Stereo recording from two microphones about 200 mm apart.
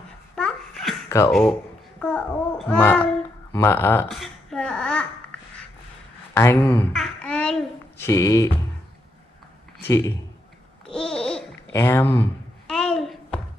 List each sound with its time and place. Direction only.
0.4 s babbling: centre (ahead or behind)
1.0 s a sound: 15° left (ahead or behind)
1.3 s a child's voice: 5° left (ahead or behind)
4.1 s a sound: centre (ahead or behind)
6.3 s speech: 15° left (ahead or behind)
6.9 s babbling: 5° left (ahead or behind)
8.1 s speech: 15° left (ahead or behind)
9.8 s speech: 15° left (ahead or behind)
10.9 s babbling: 5° left (ahead or behind)